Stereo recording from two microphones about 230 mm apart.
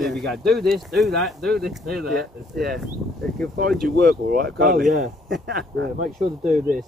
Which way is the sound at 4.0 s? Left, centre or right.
Right.